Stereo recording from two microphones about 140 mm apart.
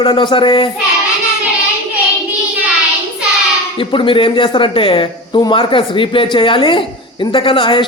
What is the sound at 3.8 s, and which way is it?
Speech, 40° left (ahead or behind).